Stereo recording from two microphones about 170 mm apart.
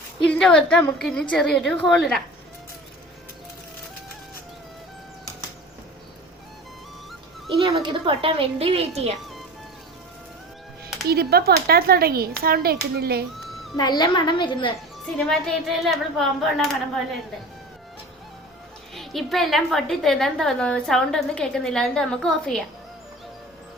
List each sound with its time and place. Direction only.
0.3 s a woman's voice: 5° left (ahead or behind)
7.5 s speech: 30° right (ahead or behind)
11.1 s speech: 65° right (ahead or behind)
13.7 s a woman's voice: 25° left (ahead or behind)
15.2 s a woman's voice: centre (ahead or behind)
18.9 s a woman's voice: centre (ahead or behind)